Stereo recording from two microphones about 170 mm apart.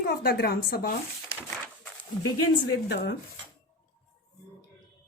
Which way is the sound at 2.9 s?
75° left (ahead or behind).